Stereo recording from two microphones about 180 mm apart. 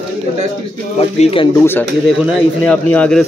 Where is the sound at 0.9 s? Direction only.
30° left (ahead or behind).